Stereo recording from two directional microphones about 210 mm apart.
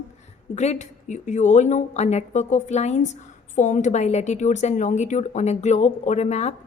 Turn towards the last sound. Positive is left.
turn(degrees=30)  # may be behind; listen again after turning